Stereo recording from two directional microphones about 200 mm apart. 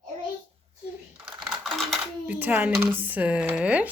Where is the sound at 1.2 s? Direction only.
Centre (ahead or behind).